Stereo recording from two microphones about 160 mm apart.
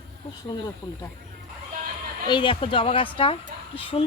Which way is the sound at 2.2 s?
30° left (ahead or behind).